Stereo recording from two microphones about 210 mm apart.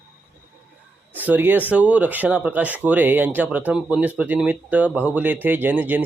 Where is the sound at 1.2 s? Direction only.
10° right (ahead or behind).